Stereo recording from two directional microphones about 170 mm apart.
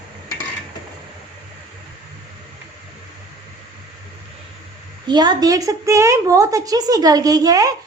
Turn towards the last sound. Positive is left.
turn(degrees=-20)  # may be behind; listen again after turning